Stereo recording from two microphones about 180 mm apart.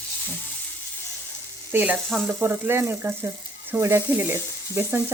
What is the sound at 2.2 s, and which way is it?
Frying, 10° right (ahead or behind).